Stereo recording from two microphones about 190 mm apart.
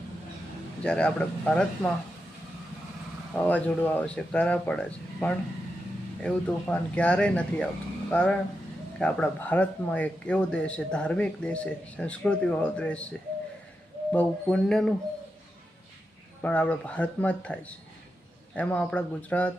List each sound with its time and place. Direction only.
0.9 s speech: 5° left (ahead or behind)
3.3 s speech: 10° left (ahead or behind)
14.1 s speech: 5° left (ahead or behind)
16.4 s speech: 10° left (ahead or behind)